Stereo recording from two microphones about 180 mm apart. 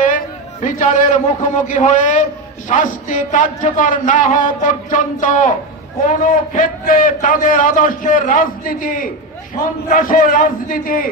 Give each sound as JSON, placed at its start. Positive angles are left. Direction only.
{"t": 0.0, "sound": "a man's voice", "side_deg": 45}